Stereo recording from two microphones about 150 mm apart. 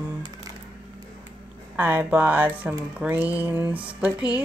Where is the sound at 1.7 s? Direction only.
10° right (ahead or behind).